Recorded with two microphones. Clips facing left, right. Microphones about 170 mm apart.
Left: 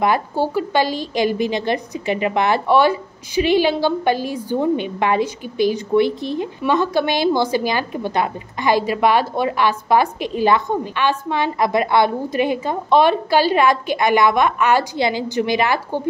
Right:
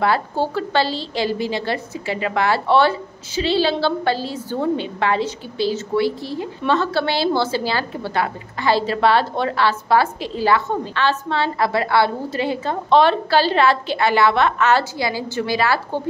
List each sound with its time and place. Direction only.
0.0 s a woman's voice: 15° left (ahead or behind)